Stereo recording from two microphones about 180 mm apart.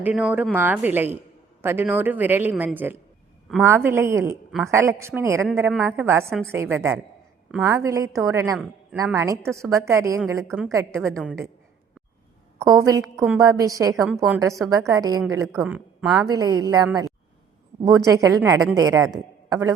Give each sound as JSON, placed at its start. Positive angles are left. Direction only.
{"t": 0.0, "sound": "a woman's voice", "side_deg": -5}
{"t": 11.2, "sound": "a woman's voice", "side_deg": -5}
{"t": 12.5, "sound": "a woman's voice", "side_deg": -20}
{"t": 13.9, "sound": "a woman's voice", "side_deg": 0}
{"t": 14.4, "sound": "a woman's voice", "side_deg": -15}
{"t": 15.7, "sound": "speech", "side_deg": -5}
{"t": 16.2, "sound": "a man's voice", "side_deg": -20}